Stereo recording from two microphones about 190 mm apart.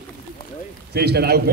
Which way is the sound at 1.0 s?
60° right (ahead or behind).